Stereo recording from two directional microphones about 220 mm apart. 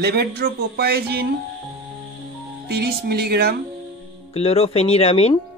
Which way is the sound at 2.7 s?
45° right (ahead or behind).